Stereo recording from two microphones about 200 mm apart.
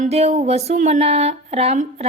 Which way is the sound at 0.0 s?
35° right (ahead or behind).